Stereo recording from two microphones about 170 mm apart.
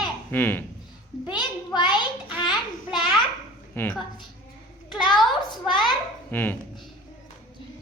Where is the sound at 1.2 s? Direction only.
25° left (ahead or behind).